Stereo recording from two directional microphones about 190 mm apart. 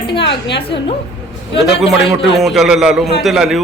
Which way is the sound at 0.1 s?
25° left (ahead or behind).